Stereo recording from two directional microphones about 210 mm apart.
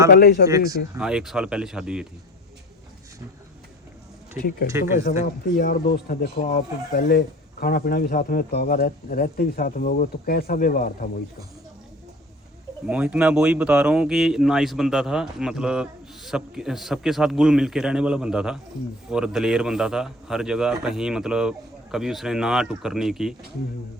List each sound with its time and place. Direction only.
0.1 s speech: 45° left (ahead or behind)
0.4 s speech: 15° right (ahead or behind)
0.9 s speech: 5° right (ahead or behind)
5.2 s speech: 45° left (ahead or behind)
12.9 s speech: 5° right (ahead or behind)